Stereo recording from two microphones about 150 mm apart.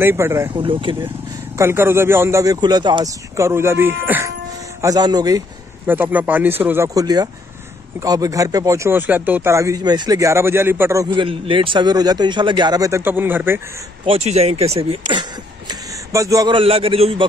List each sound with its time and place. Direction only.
0.0 s a man's voice: 15° right (ahead or behind)
0.5 s a man's voice: 35° right (ahead or behind)
1.6 s a man's voice: 15° right (ahead or behind)
4.8 s speech: 25° right (ahead or behind)
5.9 s a man's voice: 10° right (ahead or behind)
11.1 s speech: 35° right (ahead or behind); by 13.6 s 15° right (ahead or behind)
14.0 s speech: 45° right (ahead or behind)
15.7 s a sound: 20° right (ahead or behind)
16.5 s a man's voice: 40° right (ahead or behind)